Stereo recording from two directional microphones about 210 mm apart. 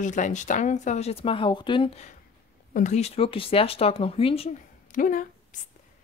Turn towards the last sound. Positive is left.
turn(degrees=40)  # may be behind; listen again after turning